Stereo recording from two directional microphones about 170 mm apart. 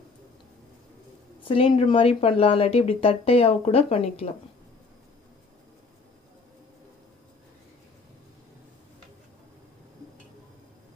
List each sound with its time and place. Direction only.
1.5 s speech: 30° left (ahead or behind)